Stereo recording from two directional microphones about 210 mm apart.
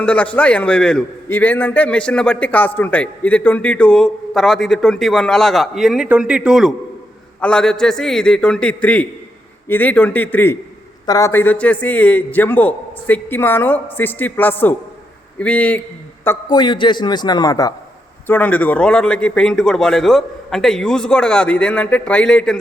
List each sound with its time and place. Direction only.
0.0 s a man's voice: 5° left (ahead or behind)